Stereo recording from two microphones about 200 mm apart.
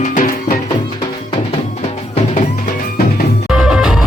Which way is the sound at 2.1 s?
35° left (ahead or behind).